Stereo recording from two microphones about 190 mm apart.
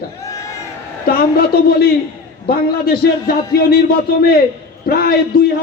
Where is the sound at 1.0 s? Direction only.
55° left (ahead or behind).